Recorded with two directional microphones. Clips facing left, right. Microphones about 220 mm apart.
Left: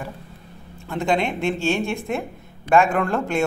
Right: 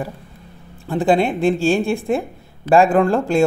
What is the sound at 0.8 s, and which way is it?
Speech, 35° right (ahead or behind).